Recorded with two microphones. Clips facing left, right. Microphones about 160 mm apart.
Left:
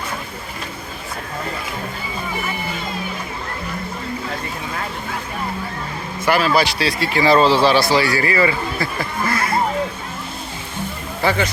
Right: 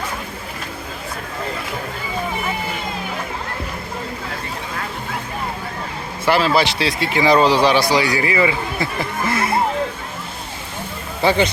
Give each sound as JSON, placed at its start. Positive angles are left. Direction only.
{"t": 6.2, "sound": "speech", "side_deg": -25}
{"t": 11.2, "sound": "a man's voice", "side_deg": -20}